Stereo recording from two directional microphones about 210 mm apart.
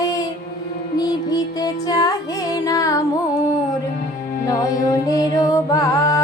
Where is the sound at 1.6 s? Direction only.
20° left (ahead or behind).